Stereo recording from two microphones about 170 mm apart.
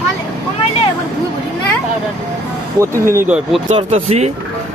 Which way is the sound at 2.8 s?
15° right (ahead or behind).